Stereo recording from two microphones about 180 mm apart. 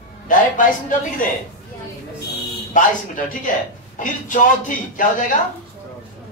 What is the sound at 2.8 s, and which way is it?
Speech, 45° left (ahead or behind).